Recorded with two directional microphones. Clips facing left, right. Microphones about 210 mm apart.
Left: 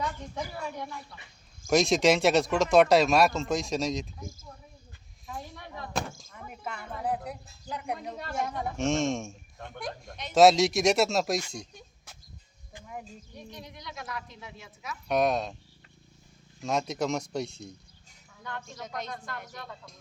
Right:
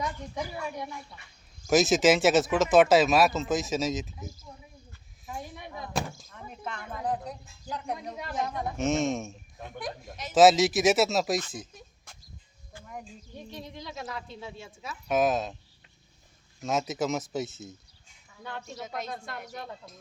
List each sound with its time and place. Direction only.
0.0 s speech: 15° right (ahead or behind)
5.3 s a sound: 15° right (ahead or behind)
5.9 s speech: 5° right (ahead or behind)
6.5 s speech: 10° left (ahead or behind)
13.3 s speech: 30° right (ahead or behind)
15.0 s speech: centre (ahead or behind)
16.6 s speech: centre (ahead or behind)